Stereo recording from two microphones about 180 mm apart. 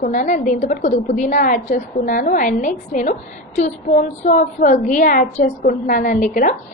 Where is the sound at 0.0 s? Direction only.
45° left (ahead or behind).